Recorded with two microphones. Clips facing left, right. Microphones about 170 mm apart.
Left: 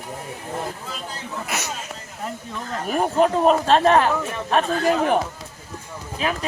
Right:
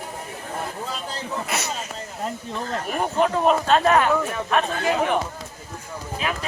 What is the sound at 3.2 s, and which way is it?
A man's voice, 35° left (ahead or behind).